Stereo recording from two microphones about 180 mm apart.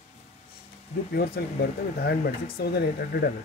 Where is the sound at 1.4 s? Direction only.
65° left (ahead or behind).